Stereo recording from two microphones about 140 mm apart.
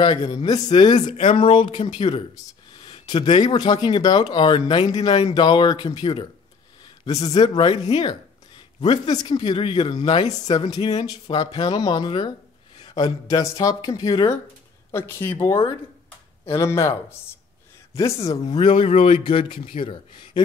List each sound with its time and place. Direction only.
0.0 s speech: 35° left (ahead or behind)
0.8 s speech: 30° left (ahead or behind)
1.1 s speech: 45° left (ahead or behind)
2.8 s a sound: 40° left (ahead or behind)
3.4 s speech: 35° left (ahead or behind)
17.9 s speech: 25° left (ahead or behind)
18.4 s speech: 35° left (ahead or behind)